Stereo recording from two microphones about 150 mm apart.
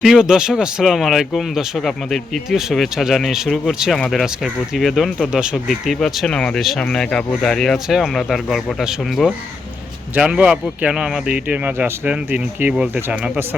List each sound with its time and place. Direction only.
0.0 s speech: 5° right (ahead or behind)